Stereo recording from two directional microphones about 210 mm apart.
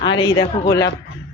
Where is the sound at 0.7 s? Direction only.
55° left (ahead or behind).